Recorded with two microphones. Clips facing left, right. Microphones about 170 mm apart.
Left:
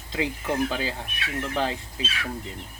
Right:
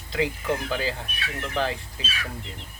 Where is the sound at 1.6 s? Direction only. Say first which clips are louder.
Right 2 dB; 20° left (ahead or behind).